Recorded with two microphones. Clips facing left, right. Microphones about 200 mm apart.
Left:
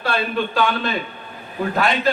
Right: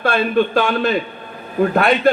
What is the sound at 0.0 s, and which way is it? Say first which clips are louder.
Speech: right 6 dB; 50° right (ahead or behind).